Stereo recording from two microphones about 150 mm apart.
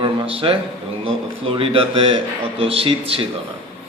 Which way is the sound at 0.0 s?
40° right (ahead or behind).